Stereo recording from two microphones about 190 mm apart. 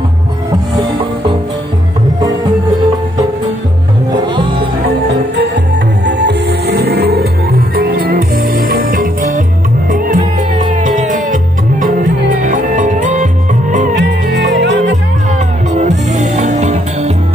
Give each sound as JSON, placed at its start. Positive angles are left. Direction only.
{"t": 6.0, "sound": "music", "side_deg": -60}
{"t": 13.9, "sound": "music", "side_deg": -65}
{"t": 15.7, "sound": "music", "side_deg": -40}